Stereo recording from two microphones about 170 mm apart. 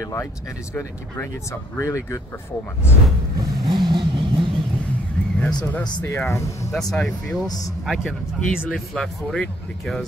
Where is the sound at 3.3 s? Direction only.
25° right (ahead or behind).